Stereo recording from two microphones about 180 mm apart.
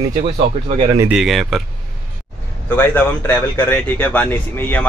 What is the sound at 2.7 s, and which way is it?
Speech, 10° left (ahead or behind).